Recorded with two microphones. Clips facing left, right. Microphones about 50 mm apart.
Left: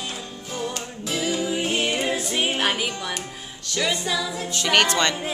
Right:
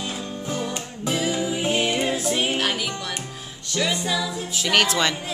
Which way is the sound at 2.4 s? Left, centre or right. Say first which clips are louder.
Left 1 dB; centre.